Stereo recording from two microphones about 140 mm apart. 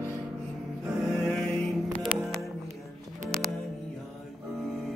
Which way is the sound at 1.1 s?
Centre (ahead or behind).